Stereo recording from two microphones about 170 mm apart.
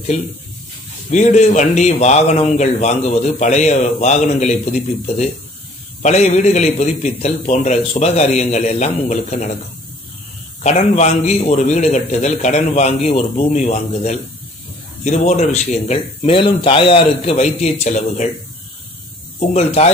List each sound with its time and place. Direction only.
0.1 s a man's voice: 40° left (ahead or behind)
10.6 s a man's voice: 40° left (ahead or behind)
19.5 s speech: 40° left (ahead or behind)